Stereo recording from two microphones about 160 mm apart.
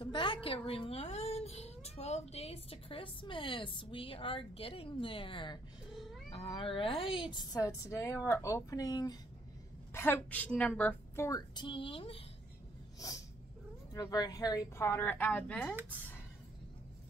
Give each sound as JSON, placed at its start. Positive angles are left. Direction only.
{"t": 0.0, "sound": "speech", "side_deg": 30}
{"t": 7.3, "sound": "speech", "side_deg": 20}
{"t": 9.9, "sound": "a woman's voice", "side_deg": 10}
{"t": 13.9, "sound": "a woman's voice", "side_deg": 25}